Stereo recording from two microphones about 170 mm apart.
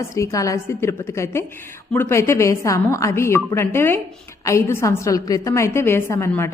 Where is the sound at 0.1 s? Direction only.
20° left (ahead or behind).